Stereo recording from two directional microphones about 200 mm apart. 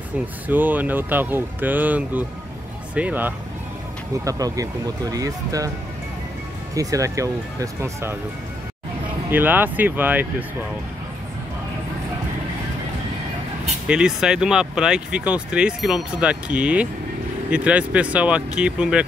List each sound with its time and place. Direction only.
0.5 s speech: 10° right (ahead or behind)
6.7 s speech: 15° right (ahead or behind)
9.3 s speech: 10° right (ahead or behind)
13.8 s speech: 5° right (ahead or behind)